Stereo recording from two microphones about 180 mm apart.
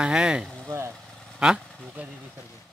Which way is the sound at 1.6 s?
5° left (ahead or behind).